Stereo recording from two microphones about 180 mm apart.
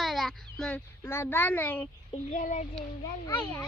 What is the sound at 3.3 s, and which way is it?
Speech, 10° left (ahead or behind).